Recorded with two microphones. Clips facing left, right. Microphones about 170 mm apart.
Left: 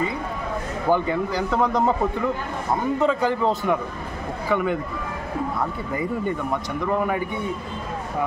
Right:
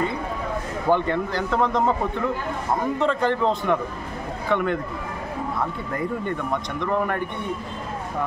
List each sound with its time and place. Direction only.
0.8 s a man's voice: 5° left (ahead or behind)
6.8 s a man's voice: 5° left (ahead or behind)